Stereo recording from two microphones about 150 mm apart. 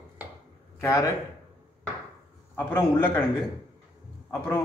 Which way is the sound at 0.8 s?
20° left (ahead or behind).